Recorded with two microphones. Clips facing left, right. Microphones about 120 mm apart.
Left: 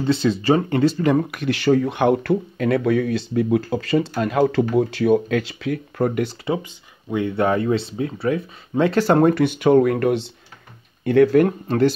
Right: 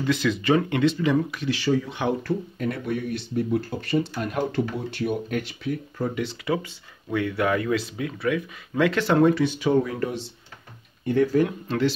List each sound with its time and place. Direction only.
0.0 s speech: 30° left (ahead or behind); by 6.3 s 60° left (ahead or behind)
6.4 s speech: 20° left (ahead or behind); by 11.4 s 75° left (ahead or behind)
11.4 s speech: 45° left (ahead or behind)